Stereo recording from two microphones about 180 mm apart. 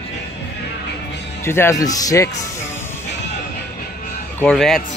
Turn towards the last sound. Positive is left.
turn(degrees=5)  # may be behind; listen again after turning